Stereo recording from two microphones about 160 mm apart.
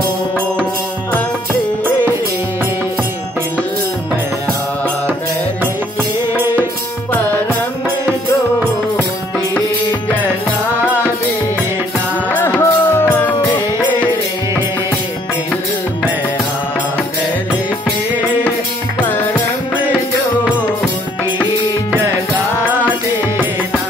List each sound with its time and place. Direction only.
12.3 s music: 10° left (ahead or behind)